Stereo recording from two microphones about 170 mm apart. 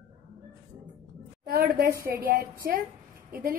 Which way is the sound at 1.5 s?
60° right (ahead or behind).